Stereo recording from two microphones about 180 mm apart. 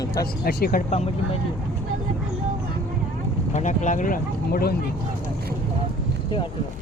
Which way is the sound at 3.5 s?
40° left (ahead or behind).